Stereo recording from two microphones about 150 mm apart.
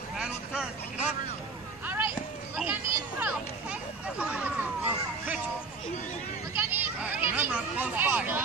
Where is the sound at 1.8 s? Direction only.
15° right (ahead or behind).